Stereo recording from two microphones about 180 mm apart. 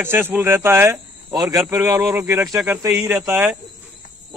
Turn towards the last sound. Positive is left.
turn(degrees=-10)  # may be behind; listen again after turning